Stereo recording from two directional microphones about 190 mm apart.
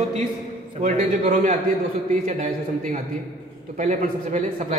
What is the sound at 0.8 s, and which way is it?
Speech, 40° right (ahead or behind).